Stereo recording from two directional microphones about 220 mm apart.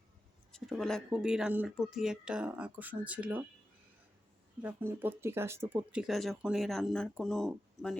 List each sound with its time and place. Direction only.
0.5 s speech: centre (ahead or behind)
4.6 s speech: 10° right (ahead or behind)